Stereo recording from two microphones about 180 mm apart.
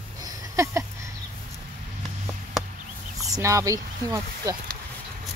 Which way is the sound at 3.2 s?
20° right (ahead or behind).